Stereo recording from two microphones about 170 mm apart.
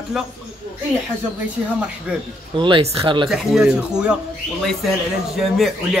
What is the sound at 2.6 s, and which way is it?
Speech, 30° right (ahead or behind).